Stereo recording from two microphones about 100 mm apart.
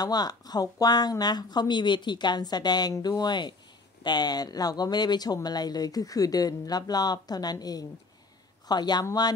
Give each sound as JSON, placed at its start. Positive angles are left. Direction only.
{"t": 0.0, "sound": "speech", "side_deg": 40}